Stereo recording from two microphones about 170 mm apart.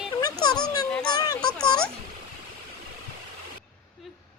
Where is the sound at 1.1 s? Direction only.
25° left (ahead or behind).